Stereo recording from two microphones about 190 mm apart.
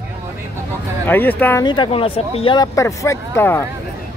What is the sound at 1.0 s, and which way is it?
Speech, 10° left (ahead or behind).